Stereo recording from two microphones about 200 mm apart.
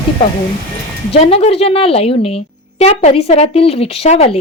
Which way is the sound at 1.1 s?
30° left (ahead or behind).